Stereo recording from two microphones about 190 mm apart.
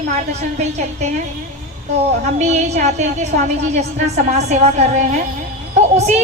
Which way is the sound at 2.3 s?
35° right (ahead or behind).